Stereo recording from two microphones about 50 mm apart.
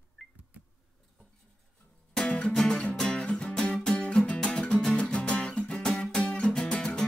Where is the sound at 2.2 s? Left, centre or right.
Centre.